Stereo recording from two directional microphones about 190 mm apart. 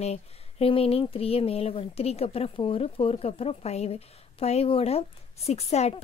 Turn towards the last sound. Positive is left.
turn(degrees=35)  # may be behind; listen again after turning